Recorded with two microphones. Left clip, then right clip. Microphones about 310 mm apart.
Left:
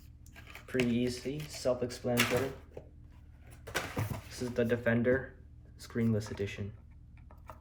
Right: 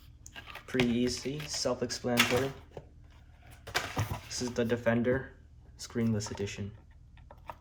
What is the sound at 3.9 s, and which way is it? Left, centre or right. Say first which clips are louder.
Door: right 4 dB; right.